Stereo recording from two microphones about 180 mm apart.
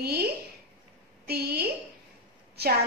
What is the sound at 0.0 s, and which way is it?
A woman's voice, 60° right (ahead or behind).